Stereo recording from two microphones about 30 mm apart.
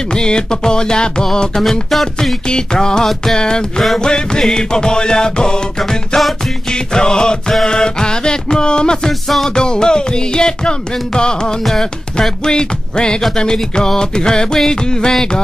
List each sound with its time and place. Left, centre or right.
0.1 s music: left
1.5 s music: centre
2.4 s music: left
5.8 s music: centre
6.7 s music: left